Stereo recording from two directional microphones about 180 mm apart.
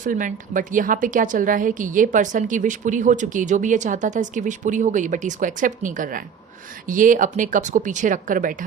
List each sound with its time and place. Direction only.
0.0 s a woman's voice: 45° right (ahead or behind)